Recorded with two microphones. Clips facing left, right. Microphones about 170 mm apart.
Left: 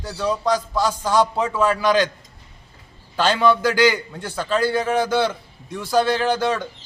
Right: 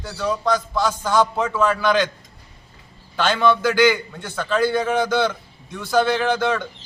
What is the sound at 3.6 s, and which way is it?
A man's voice, 10° left (ahead or behind).